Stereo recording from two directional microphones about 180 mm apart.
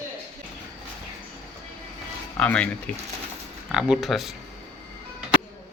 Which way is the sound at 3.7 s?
5° right (ahead or behind).